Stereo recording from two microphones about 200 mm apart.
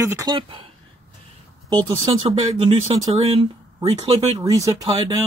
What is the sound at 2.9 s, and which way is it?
Speech, 25° right (ahead or behind).